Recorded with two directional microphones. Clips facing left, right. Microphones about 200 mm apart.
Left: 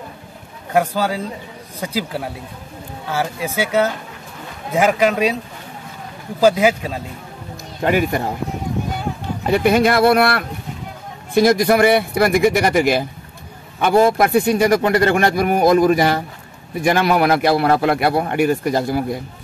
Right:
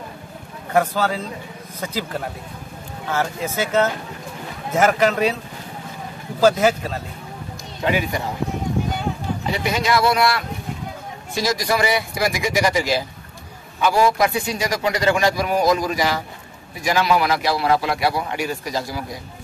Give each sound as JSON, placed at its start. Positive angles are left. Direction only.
{"t": 0.7, "sound": "speech", "side_deg": 10}
{"t": 6.4, "sound": "speech", "side_deg": 15}
{"t": 7.8, "sound": "speech", "side_deg": 50}
{"t": 9.5, "sound": "a man's voice", "side_deg": 55}